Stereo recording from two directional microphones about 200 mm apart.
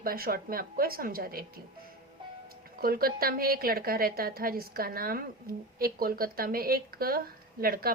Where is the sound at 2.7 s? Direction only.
50° right (ahead or behind).